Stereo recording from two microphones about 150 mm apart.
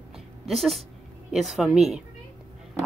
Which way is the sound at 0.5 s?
Centre (ahead or behind).